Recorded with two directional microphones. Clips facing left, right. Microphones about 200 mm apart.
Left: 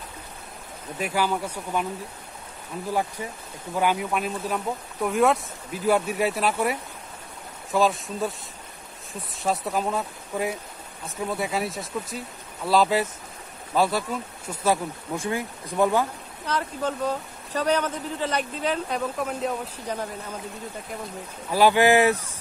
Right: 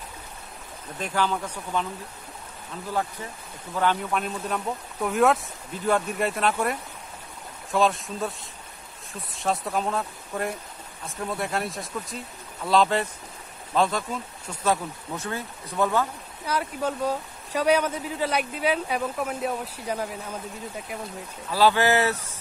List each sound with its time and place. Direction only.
0.9 s speech: 10° left (ahead or behind)
3.7 s speech: 10° left (ahead or behind)
16.4 s a man's voice: 10° right (ahead or behind)
21.5 s speech: 15° left (ahead or behind)